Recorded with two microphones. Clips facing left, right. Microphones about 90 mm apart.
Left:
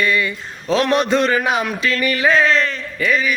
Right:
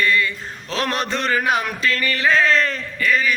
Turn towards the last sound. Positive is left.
turn(degrees=15)  # may be behind; listen again after turning